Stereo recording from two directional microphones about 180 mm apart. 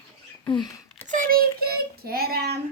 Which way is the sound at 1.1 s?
50° right (ahead or behind).